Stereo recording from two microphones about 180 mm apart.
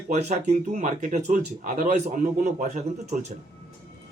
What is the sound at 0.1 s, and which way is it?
Speech, 40° right (ahead or behind).